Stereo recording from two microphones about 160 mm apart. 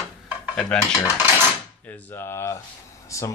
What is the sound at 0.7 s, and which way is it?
Cutlery, 5° left (ahead or behind).